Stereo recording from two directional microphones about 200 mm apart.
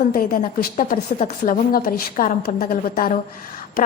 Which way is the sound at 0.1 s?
45° left (ahead or behind).